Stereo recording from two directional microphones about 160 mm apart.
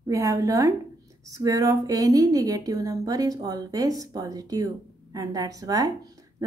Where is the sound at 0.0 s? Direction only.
20° right (ahead or behind).